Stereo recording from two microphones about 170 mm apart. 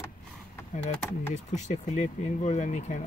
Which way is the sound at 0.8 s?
40° left (ahead or behind).